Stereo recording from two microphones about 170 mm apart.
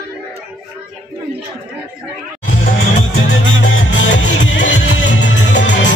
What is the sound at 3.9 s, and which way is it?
Music, 90° left.